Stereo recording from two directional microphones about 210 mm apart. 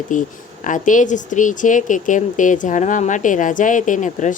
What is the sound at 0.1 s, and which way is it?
A woman's voice, 35° left (ahead or behind).